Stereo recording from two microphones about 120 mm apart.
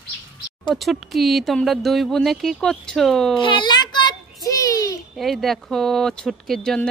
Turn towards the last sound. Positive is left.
turn(degrees=5)  # may be behind; listen again after turning